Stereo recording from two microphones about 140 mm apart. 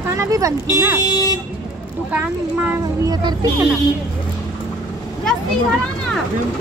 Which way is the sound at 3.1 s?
30° right (ahead or behind).